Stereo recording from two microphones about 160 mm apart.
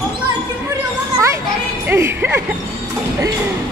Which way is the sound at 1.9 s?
15° right (ahead or behind).